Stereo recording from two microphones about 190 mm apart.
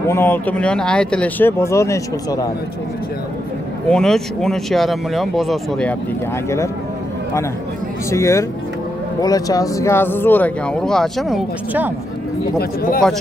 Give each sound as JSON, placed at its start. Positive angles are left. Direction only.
{"t": 0.0, "sound": "speech", "side_deg": 15}
{"t": 3.9, "sound": "speech", "side_deg": 5}
{"t": 8.1, "sound": "speech", "side_deg": 15}
{"t": 12.5, "sound": "speech", "side_deg": 50}